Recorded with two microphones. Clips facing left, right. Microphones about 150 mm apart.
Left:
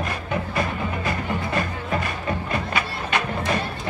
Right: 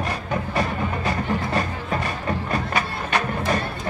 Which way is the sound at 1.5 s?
35° right (ahead or behind).